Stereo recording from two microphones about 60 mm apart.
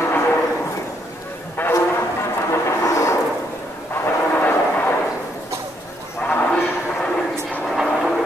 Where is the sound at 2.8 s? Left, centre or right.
Left.